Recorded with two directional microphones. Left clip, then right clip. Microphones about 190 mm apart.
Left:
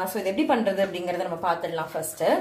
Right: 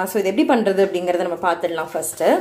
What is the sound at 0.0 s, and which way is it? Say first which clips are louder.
A woman's voice: right 7 dB; 35° right (ahead or behind).